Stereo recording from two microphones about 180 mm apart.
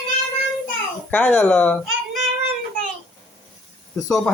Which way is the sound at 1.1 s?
10° left (ahead or behind).